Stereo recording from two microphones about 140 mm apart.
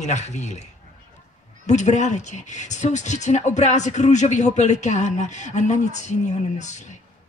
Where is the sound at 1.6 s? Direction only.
55° left (ahead or behind).